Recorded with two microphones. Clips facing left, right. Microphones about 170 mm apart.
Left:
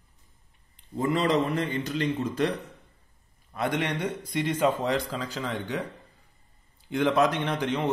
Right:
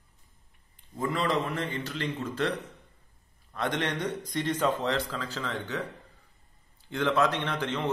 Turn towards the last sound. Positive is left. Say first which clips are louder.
# left 3 dB
turn(degrees=15)  # may be behind; listen again after turning